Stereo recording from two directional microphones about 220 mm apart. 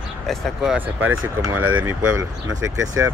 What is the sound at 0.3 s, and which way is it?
Speech, centre (ahead or behind).